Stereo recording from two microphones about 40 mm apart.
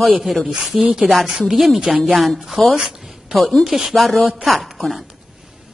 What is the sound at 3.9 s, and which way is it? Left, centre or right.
A woman's voice, centre.